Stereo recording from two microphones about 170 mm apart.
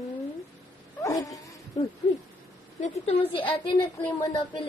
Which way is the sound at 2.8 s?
35° left (ahead or behind).